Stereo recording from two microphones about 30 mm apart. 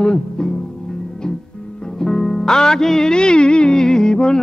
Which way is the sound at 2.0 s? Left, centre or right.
Centre.